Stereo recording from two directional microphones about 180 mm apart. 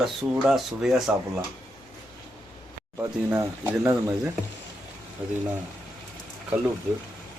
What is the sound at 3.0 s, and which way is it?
Speech, 15° right (ahead or behind).